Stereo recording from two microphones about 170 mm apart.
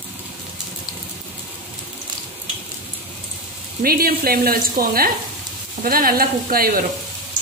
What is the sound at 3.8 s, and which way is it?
Speech, 60° right (ahead or behind).